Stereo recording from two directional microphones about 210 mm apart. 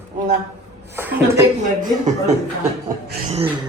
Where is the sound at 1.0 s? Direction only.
10° right (ahead or behind).